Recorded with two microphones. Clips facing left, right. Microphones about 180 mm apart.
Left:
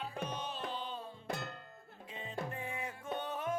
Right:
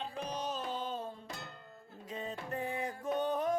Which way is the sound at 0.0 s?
35° right (ahead or behind).